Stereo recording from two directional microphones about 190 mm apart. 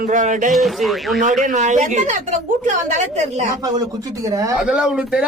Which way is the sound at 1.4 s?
40° right (ahead or behind).